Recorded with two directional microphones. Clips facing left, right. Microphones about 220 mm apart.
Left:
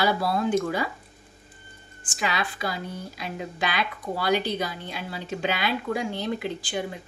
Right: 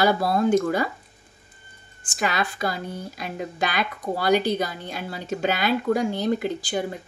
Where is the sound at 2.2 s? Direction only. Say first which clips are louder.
Right 3 dB; 45° right (ahead or behind).